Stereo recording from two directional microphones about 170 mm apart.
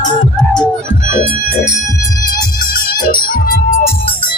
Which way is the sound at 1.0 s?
55° left (ahead or behind).